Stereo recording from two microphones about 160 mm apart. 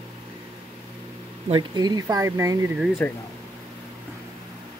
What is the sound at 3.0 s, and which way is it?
Speech, 10° left (ahead or behind).